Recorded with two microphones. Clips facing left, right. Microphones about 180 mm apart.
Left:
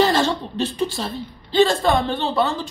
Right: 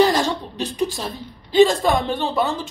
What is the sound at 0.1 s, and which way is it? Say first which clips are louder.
A woman's voice: left 1 dB; 15° right (ahead or behind).